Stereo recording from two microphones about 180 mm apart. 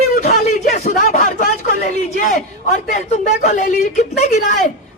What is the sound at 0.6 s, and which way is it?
Speech, 45° left (ahead or behind).